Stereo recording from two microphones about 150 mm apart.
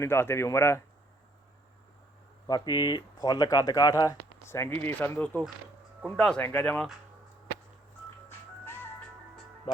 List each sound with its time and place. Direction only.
0.0 s speech: 15° left (ahead or behind)
2.5 s speech: 30° left (ahead or behind); by 6.9 s 5° left (ahead or behind)